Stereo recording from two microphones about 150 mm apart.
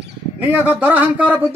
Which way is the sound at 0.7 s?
10° right (ahead or behind).